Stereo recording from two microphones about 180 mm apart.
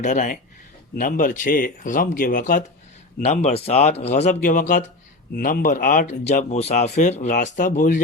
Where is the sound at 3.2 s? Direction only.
40° left (ahead or behind).